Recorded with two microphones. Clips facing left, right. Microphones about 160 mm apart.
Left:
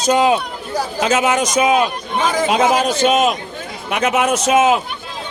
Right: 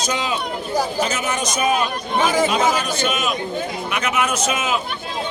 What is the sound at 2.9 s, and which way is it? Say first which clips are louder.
A man's voice: left 7 dB; 90° left.